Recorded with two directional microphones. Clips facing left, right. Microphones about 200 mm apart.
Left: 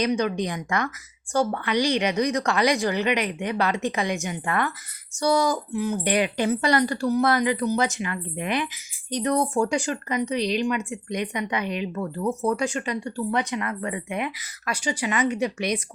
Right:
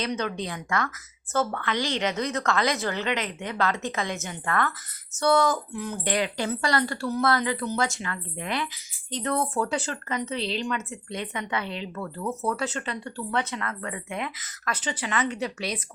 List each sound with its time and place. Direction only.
0.0 s speech: 15° left (ahead or behind)